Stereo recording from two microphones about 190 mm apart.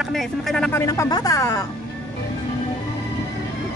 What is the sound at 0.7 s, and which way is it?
Speech, 15° left (ahead or behind).